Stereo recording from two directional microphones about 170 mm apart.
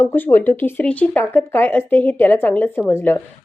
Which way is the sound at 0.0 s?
10° left (ahead or behind).